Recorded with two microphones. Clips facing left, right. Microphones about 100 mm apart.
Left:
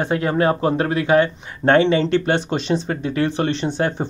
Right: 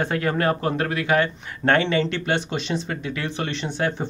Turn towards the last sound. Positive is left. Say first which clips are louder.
# left 4 dB
turn(degrees=35)  # may be behind; listen again after turning